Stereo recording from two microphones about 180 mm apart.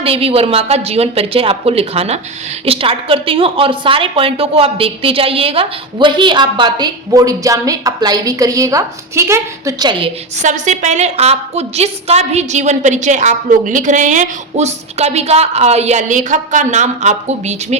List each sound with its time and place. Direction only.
0.0 s a woman's voice: 30° right (ahead or behind)
10.3 s a woman's voice: 40° right (ahead or behind)